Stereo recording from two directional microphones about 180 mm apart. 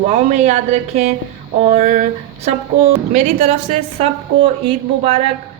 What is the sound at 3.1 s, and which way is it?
A man's voice, 40° right (ahead or behind).